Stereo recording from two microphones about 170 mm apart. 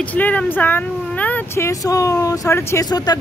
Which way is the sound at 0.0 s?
10° left (ahead or behind).